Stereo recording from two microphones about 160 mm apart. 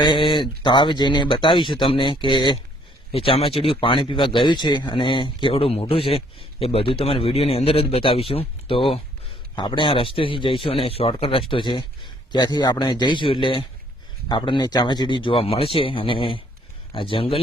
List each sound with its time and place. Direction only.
0.0 s speech: 30° left (ahead or behind)